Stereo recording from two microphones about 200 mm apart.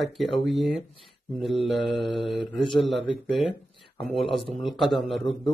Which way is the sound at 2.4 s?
25° left (ahead or behind).